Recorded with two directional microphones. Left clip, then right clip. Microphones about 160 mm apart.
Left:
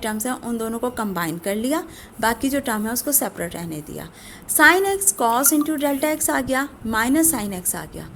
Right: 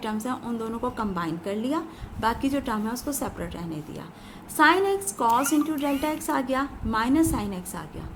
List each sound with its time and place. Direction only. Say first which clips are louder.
0.0 s a woman's voice: left 4 dB; 40° left (ahead or behind)